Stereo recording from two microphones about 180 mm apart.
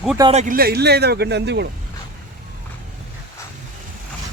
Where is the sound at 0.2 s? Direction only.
30° right (ahead or behind).